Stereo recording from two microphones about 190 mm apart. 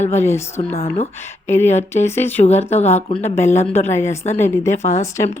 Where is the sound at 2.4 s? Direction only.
35° left (ahead or behind).